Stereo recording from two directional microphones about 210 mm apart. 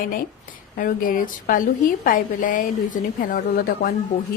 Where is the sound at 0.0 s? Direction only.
45° left (ahead or behind).